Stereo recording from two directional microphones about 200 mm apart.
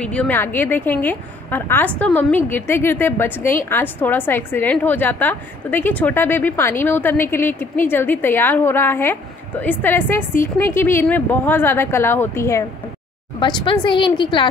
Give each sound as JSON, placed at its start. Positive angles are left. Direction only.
{"t": 0.0, "sound": "a woman's voice", "side_deg": 5}